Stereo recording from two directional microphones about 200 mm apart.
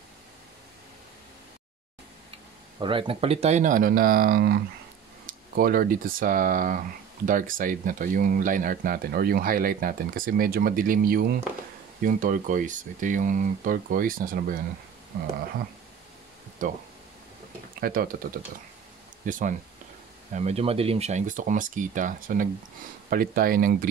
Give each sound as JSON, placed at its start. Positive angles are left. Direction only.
{"t": 2.8, "sound": "speech", "side_deg": -25}
{"t": 16.6, "sound": "speech", "side_deg": -40}
{"t": 19.2, "sound": "speech", "side_deg": -40}